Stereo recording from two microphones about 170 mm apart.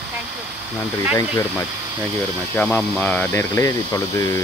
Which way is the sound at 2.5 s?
10° left (ahead or behind).